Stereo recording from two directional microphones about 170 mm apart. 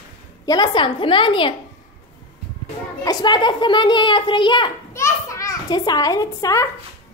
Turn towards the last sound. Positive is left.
turn(degrees=20)  # may be behind; listen again after turning